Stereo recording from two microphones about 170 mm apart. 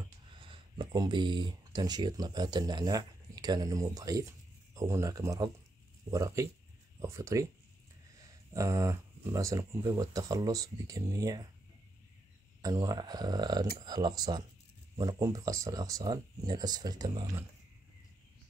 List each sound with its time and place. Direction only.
0.4 s speech: 30° right (ahead or behind)
12.6 s speech: 20° right (ahead or behind)